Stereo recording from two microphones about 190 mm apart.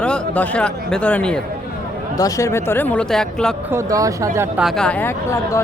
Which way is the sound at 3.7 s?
15° right (ahead or behind).